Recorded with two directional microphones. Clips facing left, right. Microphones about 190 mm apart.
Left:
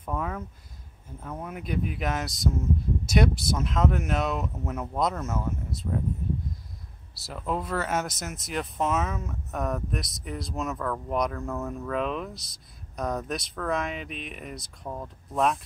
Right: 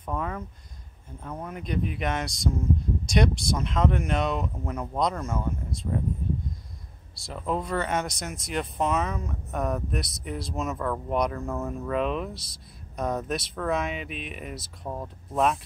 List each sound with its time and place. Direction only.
0.0 s a sound: 5° left (ahead or behind)
1.4 s speech: 5° left (ahead or behind)
7.2 s speech: centre (ahead or behind)